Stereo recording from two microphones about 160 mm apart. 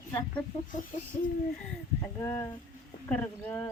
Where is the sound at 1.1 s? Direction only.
50° left (ahead or behind).